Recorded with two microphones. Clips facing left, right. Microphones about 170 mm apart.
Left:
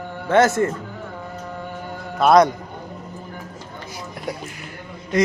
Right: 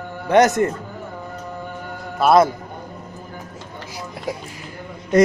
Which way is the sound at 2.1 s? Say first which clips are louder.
Even; 5° right (ahead or behind).